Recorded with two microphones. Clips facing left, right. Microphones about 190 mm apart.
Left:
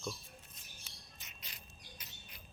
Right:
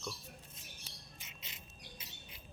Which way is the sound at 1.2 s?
25° right (ahead or behind).